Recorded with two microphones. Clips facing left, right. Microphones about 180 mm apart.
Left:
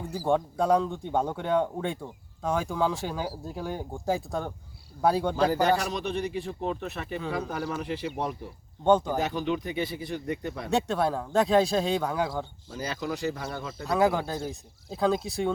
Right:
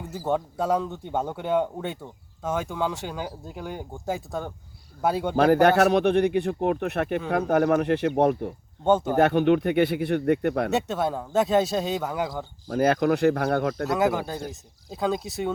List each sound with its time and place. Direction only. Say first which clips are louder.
0.3 s speech: left 1 dB; 5° right (ahead or behind)
5.4 s speech: right 10 dB; 60° right (ahead or behind)
8.8 s speech: right 1 dB; 10° right (ahead or behind)
9.1 s speech: right 9 dB; 65° right (ahead or behind)
11.1 s speech: right 1 dB; 5° right (ahead or behind)
12.7 s speech: right 12 dB; 55° right (ahead or behind)
13.8 s speech: right 1 dB; centre (ahead or behind)